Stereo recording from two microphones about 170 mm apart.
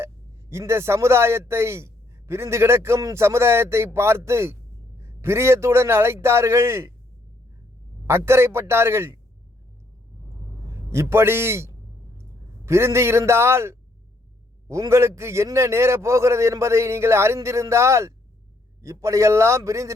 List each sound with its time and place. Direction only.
0.5 s a man's voice: 15° right (ahead or behind)
8.0 s a man's voice: 15° right (ahead or behind)
10.9 s a man's voice: 15° right (ahead or behind)